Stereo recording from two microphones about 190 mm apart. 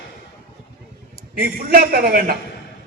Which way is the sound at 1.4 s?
50° right (ahead or behind).